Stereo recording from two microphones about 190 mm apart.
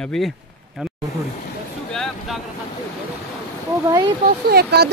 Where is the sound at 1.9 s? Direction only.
Centre (ahead or behind).